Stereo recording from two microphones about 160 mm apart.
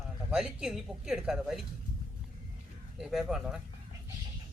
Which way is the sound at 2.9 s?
Centre (ahead or behind).